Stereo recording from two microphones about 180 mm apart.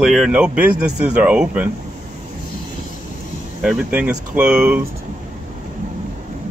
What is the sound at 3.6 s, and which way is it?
Speech, 5° right (ahead or behind).